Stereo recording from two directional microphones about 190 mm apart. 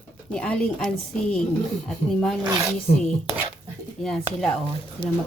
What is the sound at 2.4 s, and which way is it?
Speech, 20° right (ahead or behind).